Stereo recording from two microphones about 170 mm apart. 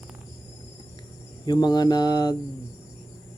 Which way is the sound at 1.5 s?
25° left (ahead or behind).